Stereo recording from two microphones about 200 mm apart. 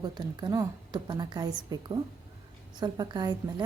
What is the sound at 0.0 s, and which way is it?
Speech, 20° right (ahead or behind).